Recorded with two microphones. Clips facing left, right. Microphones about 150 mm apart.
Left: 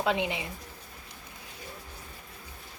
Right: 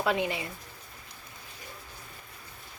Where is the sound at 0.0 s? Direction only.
20° left (ahead or behind).